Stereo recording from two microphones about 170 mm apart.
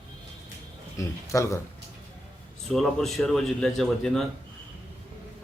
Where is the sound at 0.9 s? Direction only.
20° left (ahead or behind).